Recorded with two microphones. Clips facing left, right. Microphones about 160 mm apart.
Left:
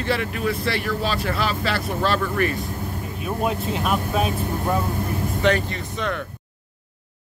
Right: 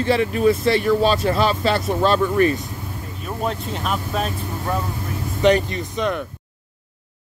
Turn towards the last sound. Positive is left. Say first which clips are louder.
# right 4 dB
turn(degrees=-15)  # may be behind; listen again after turning